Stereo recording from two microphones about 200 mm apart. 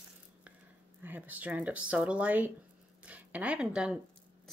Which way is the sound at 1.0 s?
10° right (ahead or behind).